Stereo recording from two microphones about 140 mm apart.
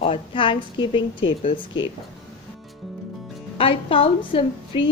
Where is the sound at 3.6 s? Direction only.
40° left (ahead or behind).